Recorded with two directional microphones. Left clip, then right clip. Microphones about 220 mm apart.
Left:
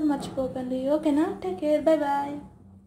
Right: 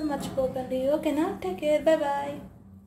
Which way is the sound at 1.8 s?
5° left (ahead or behind).